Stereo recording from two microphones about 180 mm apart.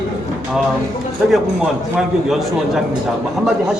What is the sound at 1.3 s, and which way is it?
A man's voice, centre (ahead or behind).